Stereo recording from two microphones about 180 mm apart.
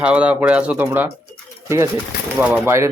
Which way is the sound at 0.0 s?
5° right (ahead or behind).